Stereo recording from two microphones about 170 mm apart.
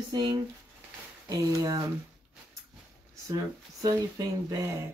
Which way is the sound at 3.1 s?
20° right (ahead or behind).